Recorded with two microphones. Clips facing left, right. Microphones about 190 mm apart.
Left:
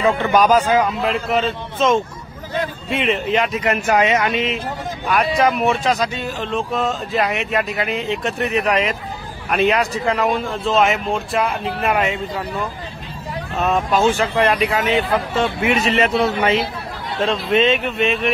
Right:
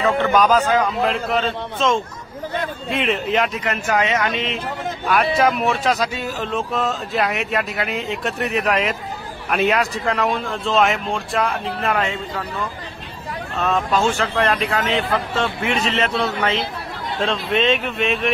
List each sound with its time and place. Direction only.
0.0 s speech: 10° left (ahead or behind)
3.6 s speech: 10° left (ahead or behind)
13.6 s speech: 15° left (ahead or behind)
14.9 s speech: centre (ahead or behind)